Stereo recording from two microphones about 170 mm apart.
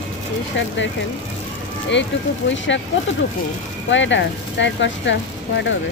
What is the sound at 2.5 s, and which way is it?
Speech, 90° left.